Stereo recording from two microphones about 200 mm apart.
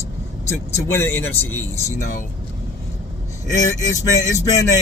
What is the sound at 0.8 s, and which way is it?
Speech, 10° left (ahead or behind).